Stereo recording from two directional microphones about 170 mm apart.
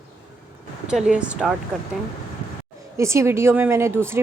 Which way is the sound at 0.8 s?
5° right (ahead or behind).